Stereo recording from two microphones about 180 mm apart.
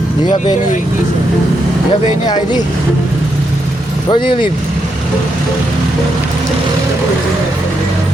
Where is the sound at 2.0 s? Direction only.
25° left (ahead or behind).